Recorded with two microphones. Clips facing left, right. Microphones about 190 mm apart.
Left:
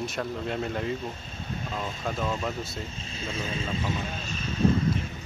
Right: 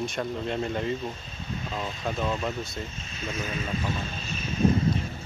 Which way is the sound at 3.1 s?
30° left (ahead or behind).